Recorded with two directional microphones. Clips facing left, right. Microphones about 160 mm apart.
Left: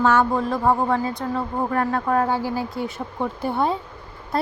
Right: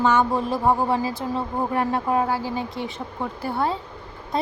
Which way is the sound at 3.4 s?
15° left (ahead or behind).